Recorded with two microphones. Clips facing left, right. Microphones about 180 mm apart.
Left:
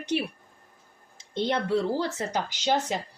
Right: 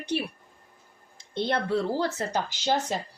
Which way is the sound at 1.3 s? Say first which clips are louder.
Left 1 dB; 15° left (ahead or behind).